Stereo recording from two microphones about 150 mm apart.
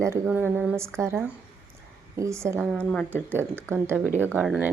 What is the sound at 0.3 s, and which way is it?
A woman's voice, 10° right (ahead or behind).